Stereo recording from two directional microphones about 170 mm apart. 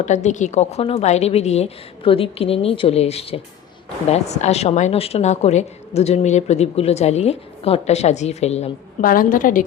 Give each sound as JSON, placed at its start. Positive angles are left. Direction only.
{"t": 0.0, "sound": "a woman's voice", "side_deg": 45}
{"t": 9.0, "sound": "a woman's voice", "side_deg": 55}